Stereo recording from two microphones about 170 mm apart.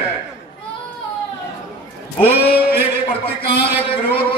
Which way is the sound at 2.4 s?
65° left (ahead or behind).